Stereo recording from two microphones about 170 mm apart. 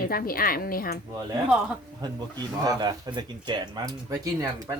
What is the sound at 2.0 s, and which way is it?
Speech, 25° right (ahead or behind).